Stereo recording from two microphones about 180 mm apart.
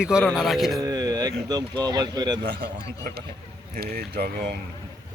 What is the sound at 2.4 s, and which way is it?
A man's voice, 65° right (ahead or behind).